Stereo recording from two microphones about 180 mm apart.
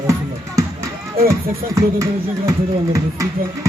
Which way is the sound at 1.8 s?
15° right (ahead or behind).